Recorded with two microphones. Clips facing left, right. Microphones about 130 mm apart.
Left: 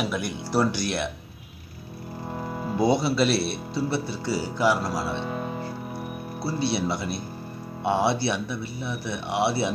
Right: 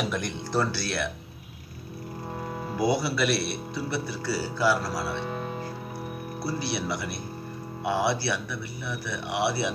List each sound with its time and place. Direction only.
0.0 s speech: 5° left (ahead or behind)
2.8 s speech: 25° left (ahead or behind)